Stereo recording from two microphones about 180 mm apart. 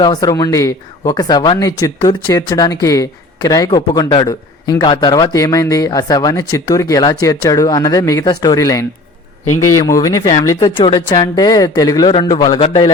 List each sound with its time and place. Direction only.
0.0 s speech: 20° left (ahead or behind)
10.8 s speech: 30° left (ahead or behind)